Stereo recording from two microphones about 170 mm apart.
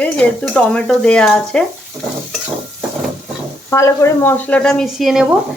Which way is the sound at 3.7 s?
15° left (ahead or behind).